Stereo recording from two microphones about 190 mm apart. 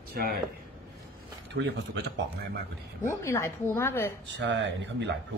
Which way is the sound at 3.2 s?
15° left (ahead or behind).